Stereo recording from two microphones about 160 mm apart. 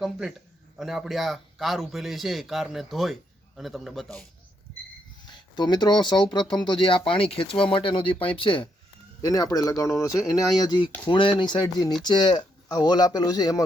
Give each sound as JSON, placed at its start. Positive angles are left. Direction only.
{"t": 0.0, "sound": "a man's voice", "side_deg": 0}
{"t": 5.2, "sound": "speech", "side_deg": 25}